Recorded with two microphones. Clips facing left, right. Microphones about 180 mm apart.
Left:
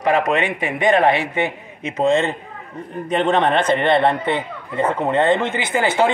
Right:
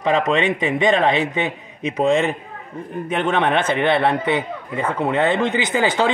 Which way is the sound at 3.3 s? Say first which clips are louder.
Even; 5° right (ahead or behind).